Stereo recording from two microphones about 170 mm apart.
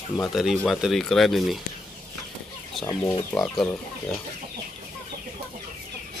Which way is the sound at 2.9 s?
15° left (ahead or behind).